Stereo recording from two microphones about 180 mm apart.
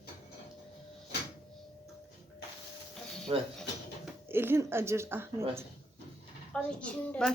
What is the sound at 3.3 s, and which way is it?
Speech, 30° right (ahead or behind).